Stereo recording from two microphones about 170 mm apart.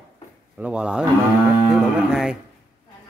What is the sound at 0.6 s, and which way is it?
Speech, 5° right (ahead or behind).